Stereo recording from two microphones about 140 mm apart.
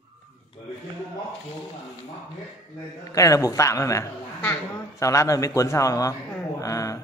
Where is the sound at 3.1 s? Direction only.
25° left (ahead or behind).